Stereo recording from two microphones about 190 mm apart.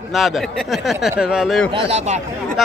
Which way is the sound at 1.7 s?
30° right (ahead or behind).